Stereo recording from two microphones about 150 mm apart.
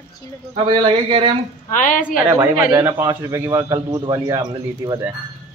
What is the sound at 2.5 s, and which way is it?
A man's voice, 25° right (ahead or behind).